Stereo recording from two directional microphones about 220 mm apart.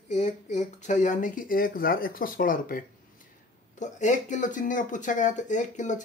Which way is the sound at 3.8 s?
35° left (ahead or behind).